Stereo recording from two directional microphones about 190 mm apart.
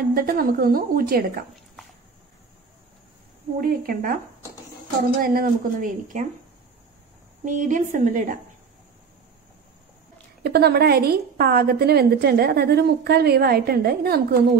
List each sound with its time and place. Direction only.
0.1 s a woman's voice: 50° right (ahead or behind)
3.6 s a woman's voice: 50° right (ahead or behind)
5.2 s a woman's voice: 50° right (ahead or behind)
7.4 s a woman's voice: 40° right (ahead or behind)
10.4 s a woman's voice: 55° right (ahead or behind)